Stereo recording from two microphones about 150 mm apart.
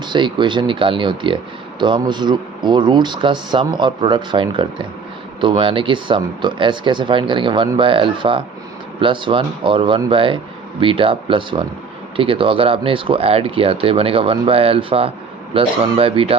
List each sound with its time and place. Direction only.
0.0 s speech: 30° right (ahead or behind)